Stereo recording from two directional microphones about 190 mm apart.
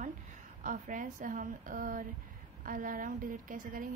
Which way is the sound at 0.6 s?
45° right (ahead or behind).